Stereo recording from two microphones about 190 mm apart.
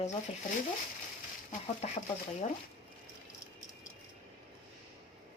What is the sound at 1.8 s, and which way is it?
Speech, 35° left (ahead or behind).